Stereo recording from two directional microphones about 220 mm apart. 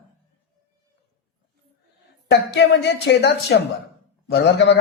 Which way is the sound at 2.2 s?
50° left (ahead or behind).